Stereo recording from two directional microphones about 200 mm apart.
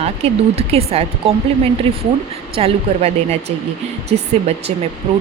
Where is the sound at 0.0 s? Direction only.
30° right (ahead or behind).